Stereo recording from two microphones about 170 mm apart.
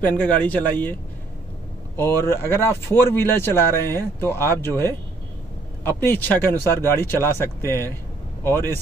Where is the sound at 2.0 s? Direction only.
15° left (ahead or behind).